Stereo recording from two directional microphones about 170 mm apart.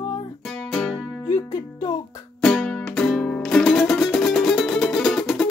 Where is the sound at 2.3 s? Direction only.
5° left (ahead or behind).